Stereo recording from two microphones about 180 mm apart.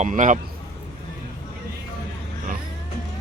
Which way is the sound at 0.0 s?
45° right (ahead or behind).